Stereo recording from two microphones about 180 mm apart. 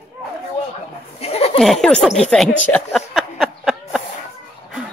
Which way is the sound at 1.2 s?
35° left (ahead or behind).